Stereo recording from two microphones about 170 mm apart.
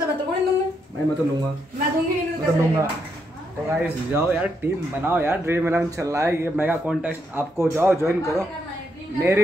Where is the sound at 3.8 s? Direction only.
10° right (ahead or behind).